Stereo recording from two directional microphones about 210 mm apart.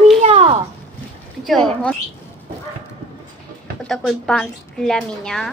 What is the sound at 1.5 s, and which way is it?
Speech, centre (ahead or behind).